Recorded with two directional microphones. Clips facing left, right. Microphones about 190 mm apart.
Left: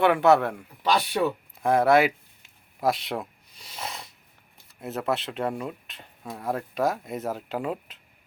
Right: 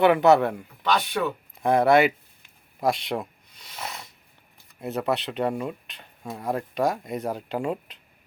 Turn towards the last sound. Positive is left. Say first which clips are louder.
# right 2 dB
turn(degrees=0)  # may be behind; listen again after turning